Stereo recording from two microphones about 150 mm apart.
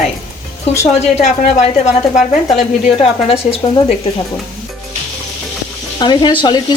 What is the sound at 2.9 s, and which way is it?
Speech, 40° left (ahead or behind).